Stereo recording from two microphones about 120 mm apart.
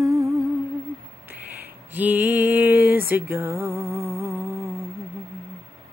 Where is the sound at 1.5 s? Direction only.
15° right (ahead or behind).